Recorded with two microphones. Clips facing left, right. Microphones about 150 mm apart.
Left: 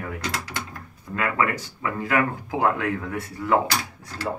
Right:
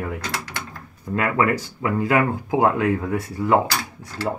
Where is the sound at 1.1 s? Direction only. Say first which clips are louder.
Right 4 dB; 30° right (ahead or behind).